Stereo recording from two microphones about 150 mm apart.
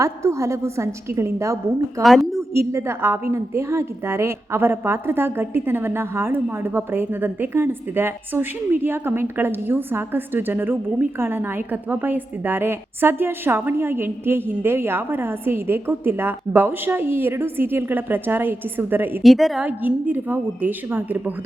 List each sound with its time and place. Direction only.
0.0 s a woman's voice: 20° right (ahead or behind)
2.0 s a woman's voice: centre (ahead or behind)
2.5 s a woman's voice: 20° right (ahead or behind)
19.2 s a woman's voice: centre (ahead or behind)